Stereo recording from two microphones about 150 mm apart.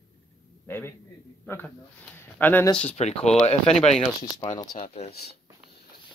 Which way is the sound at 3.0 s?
45° left (ahead or behind).